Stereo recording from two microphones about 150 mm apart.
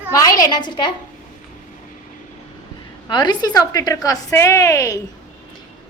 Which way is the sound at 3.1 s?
30° left (ahead or behind).